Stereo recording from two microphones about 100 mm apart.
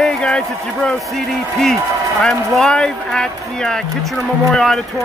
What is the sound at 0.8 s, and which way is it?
Speech, 5° left (ahead or behind).